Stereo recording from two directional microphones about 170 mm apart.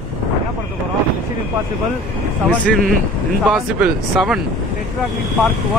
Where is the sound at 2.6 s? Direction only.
Centre (ahead or behind).